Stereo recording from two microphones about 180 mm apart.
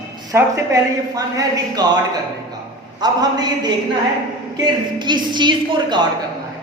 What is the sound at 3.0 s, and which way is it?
A woman's voice, 20° right (ahead or behind).